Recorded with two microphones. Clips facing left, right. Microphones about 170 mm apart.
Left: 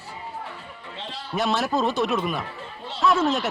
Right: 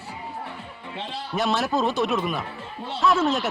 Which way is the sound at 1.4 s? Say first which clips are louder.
Even; centre (ahead or behind).